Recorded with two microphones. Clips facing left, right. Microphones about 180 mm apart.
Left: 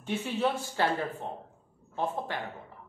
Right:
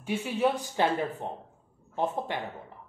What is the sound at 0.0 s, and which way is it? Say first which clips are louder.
Speech: right 2 dB; 10° right (ahead or behind).